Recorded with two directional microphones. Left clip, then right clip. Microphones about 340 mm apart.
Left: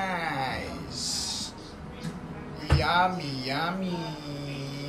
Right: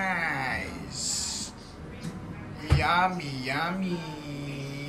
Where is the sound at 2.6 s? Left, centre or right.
Centre.